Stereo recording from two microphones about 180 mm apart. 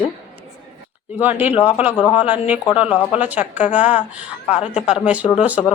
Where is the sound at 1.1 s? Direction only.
10° right (ahead or behind).